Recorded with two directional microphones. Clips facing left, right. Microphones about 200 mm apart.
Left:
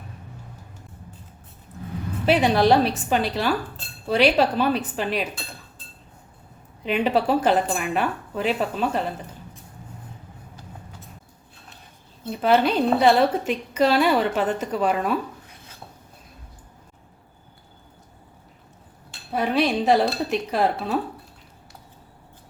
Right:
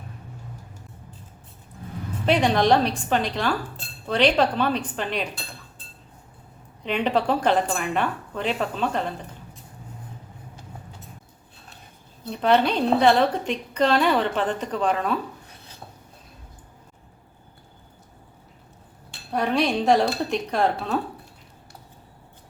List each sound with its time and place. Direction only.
2.2 s a woman's voice: 5° left (ahead or behind)
6.8 s speech: 5° left (ahead or behind)
12.3 s a woman's voice: 5° left (ahead or behind)
19.3 s speech: centre (ahead or behind)